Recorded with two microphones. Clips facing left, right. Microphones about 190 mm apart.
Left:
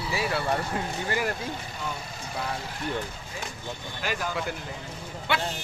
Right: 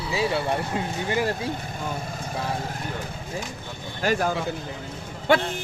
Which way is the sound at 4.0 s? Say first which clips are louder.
Right 7 dB; 45° right (ahead or behind).